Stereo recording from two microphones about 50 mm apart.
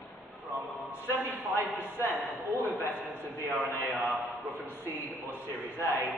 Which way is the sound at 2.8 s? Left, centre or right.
Right.